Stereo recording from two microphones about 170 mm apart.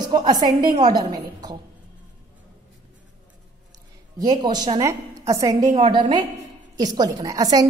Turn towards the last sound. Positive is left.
turn(degrees=-20)  # may be behind; listen again after turning